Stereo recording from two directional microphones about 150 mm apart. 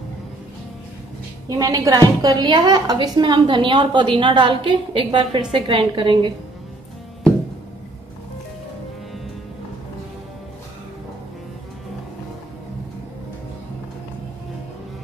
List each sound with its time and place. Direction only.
1.6 s a woman's voice: 25° right (ahead or behind)